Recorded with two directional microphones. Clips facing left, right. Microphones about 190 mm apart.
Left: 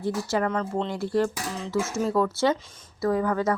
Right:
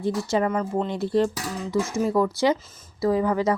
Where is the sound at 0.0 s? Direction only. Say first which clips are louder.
Right 2 dB; 20° right (ahead or behind).